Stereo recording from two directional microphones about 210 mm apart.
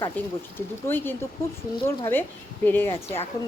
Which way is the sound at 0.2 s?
10° left (ahead or behind).